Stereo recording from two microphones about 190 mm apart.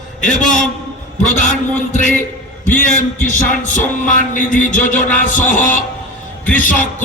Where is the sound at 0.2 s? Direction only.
40° left (ahead or behind).